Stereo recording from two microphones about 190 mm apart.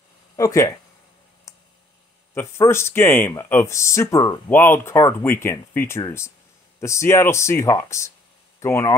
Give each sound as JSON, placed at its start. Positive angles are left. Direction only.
{"t": 0.4, "sound": "speech", "side_deg": 15}
{"t": 2.3, "sound": "speech", "side_deg": 15}